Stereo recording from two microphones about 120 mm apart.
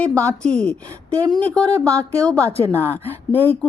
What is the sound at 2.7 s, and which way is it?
Speech, 15° left (ahead or behind).